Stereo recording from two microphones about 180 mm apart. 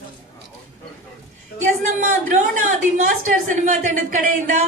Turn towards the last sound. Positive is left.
turn(degrees=-45)  # may be behind; listen again after turning